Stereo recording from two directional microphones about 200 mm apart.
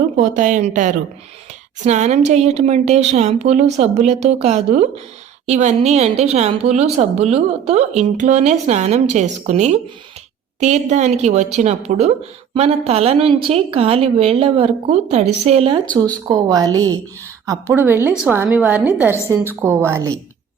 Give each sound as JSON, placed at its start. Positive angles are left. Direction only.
{"t": 0.2, "sound": "a woman's voice", "side_deg": -40}
{"t": 16.2, "sound": "a woman's voice", "side_deg": -15}